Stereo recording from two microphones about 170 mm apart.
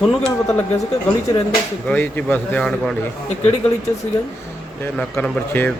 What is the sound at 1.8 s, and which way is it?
Speech, 10° left (ahead or behind).